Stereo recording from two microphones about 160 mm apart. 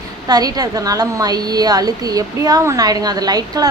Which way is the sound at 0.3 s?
25° right (ahead or behind).